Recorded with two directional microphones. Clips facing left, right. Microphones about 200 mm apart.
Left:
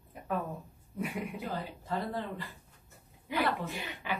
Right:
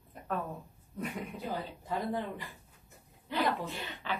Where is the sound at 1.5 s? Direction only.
15° right (ahead or behind).